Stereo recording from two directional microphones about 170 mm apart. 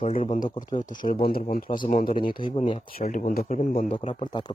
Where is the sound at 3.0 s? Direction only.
50° left (ahead or behind).